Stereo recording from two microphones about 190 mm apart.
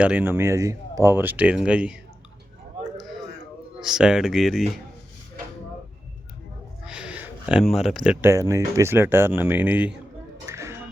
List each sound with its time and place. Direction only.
0.0 s speech: 5° right (ahead or behind)
3.8 s speech: 5° right (ahead or behind)
6.8 s speech: 5° right (ahead or behind)
10.4 s music: 15° right (ahead or behind)